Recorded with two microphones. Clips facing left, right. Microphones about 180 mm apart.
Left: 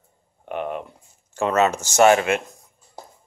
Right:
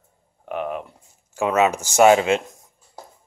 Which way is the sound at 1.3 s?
10° right (ahead or behind).